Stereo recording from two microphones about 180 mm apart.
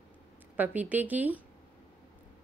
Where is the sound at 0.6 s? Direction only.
10° right (ahead or behind).